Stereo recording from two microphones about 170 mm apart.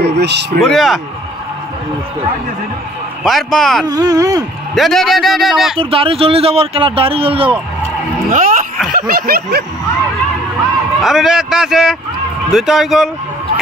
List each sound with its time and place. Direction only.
0.0 s speech: 80° right
0.6 s speech: centre (ahead or behind)
3.3 s speech: centre (ahead or behind)
3.8 s speech: 20° right (ahead or behind)
4.7 s speech: centre (ahead or behind)
5.8 s speech: 30° right (ahead or behind)
8.3 s a sound: 55° right (ahead or behind)
11.0 s speech: 5° right (ahead or behind)